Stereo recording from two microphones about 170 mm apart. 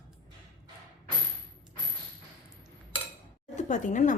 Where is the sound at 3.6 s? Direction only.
45° left (ahead or behind).